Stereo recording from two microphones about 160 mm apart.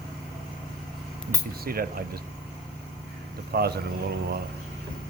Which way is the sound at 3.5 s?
75° right (ahead or behind).